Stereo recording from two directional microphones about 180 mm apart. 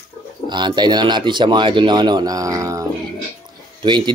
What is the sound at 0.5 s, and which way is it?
Speech, 25° right (ahead or behind).